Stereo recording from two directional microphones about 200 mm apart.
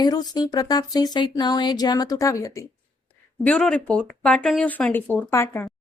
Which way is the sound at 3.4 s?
5° left (ahead or behind).